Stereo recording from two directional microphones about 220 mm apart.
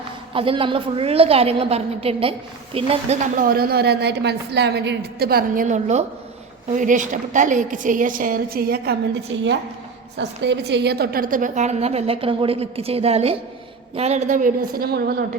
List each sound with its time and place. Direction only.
0.3 s a woman's voice: 25° right (ahead or behind)
3.3 s a woman's voice: 40° right (ahead or behind)
10.2 s a woman's voice: 55° right (ahead or behind)